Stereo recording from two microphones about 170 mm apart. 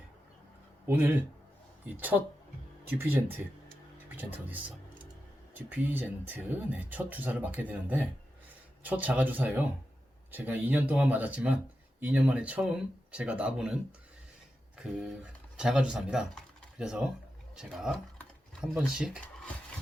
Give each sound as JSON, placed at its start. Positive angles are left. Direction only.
{"t": 0.9, "sound": "speech", "side_deg": -15}
{"t": 14.8, "sound": "speech", "side_deg": -5}